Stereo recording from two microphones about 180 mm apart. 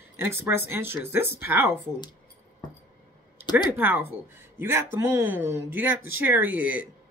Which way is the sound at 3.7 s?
10° right (ahead or behind).